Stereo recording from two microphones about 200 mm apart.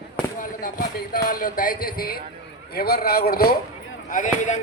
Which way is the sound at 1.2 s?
45° left (ahead or behind).